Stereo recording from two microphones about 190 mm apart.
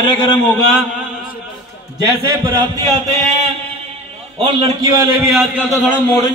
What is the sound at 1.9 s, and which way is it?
A man's voice, 20° right (ahead or behind).